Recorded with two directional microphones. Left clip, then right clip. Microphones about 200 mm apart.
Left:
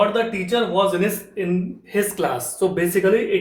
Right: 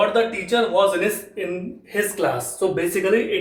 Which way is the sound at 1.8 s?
35° left (ahead or behind).